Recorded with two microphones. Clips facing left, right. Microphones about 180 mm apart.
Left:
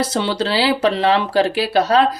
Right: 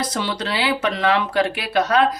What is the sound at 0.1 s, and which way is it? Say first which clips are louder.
Speech: left 5 dB; 30° left (ahead or behind).